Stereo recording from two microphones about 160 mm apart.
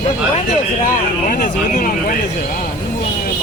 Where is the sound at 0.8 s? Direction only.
55° left (ahead or behind).